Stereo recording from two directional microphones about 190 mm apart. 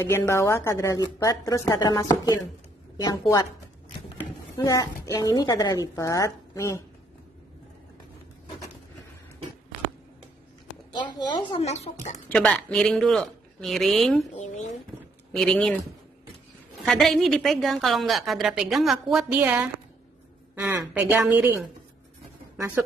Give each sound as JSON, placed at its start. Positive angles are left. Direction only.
{"t": 0.0, "sound": "a woman's voice", "side_deg": 15}
{"t": 4.6, "sound": "speech", "side_deg": 15}
{"t": 10.9, "sound": "speech", "side_deg": 25}
{"t": 12.3, "sound": "a woman's voice", "side_deg": 5}
{"t": 14.4, "sound": "speech", "side_deg": 40}
{"t": 15.3, "sound": "a woman's voice", "side_deg": 5}
{"t": 16.8, "sound": "a woman's voice", "side_deg": 0}
{"t": 20.9, "sound": "a woman's voice", "side_deg": -10}
{"t": 22.6, "sound": "a woman's voice", "side_deg": -10}